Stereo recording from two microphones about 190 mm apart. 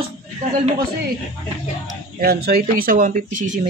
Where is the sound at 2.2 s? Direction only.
55° right (ahead or behind).